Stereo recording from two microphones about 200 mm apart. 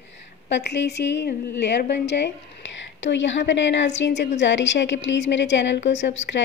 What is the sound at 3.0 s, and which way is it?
A woman's voice, 65° left (ahead or behind).